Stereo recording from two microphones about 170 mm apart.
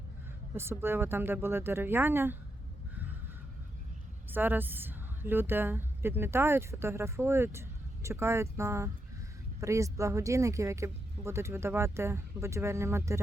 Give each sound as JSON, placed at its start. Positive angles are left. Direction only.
{"t": 0.5, "sound": "speech", "side_deg": -15}
{"t": 4.3, "sound": "a woman's voice", "side_deg": -10}